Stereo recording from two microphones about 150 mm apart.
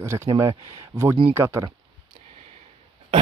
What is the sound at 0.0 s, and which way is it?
Speech, 15° right (ahead or behind).